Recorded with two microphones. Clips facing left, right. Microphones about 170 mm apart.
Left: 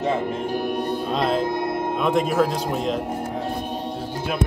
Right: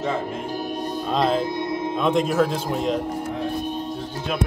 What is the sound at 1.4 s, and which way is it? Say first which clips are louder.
Music: left 2 dB; 55° left (ahead or behind).